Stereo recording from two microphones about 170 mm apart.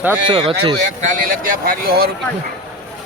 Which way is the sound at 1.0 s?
50° right (ahead or behind).